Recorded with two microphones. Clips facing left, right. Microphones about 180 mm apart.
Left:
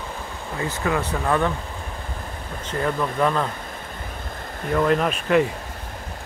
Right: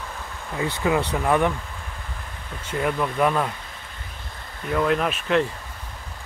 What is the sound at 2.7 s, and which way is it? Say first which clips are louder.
Speech: even; 10° right (ahead or behind).